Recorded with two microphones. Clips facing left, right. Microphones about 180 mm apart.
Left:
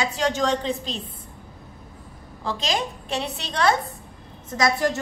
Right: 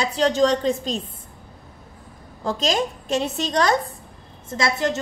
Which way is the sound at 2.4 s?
45° right (ahead or behind).